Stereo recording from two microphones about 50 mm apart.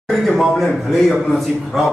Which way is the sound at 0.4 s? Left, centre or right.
Centre.